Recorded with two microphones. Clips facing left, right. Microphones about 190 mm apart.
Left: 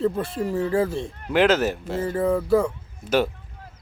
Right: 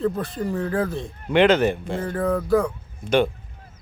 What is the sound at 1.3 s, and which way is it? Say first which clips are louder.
Speech: right 2 dB; 5° left (ahead or behind).